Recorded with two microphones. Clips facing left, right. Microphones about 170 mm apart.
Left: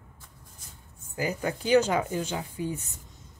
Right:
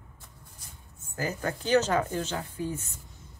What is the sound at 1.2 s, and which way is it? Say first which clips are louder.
Speech: left 2 dB; 15° left (ahead or behind).